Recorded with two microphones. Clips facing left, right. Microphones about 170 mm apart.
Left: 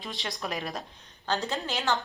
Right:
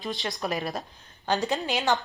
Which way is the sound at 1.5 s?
15° right (ahead or behind).